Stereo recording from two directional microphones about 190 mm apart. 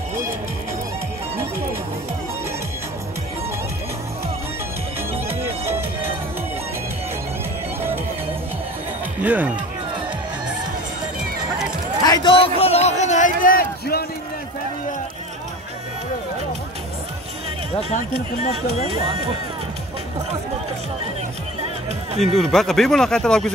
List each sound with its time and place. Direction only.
9.2 s speech: 10° right (ahead or behind)
12.0 s a sound: 20° left (ahead or behind); by 14.0 s 50° left (ahead or behind)
22.2 s speech: centre (ahead or behind)